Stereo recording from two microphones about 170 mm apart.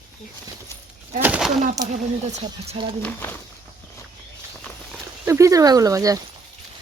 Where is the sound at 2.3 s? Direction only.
40° right (ahead or behind).